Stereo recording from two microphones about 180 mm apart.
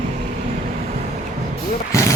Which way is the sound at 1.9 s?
15° left (ahead or behind).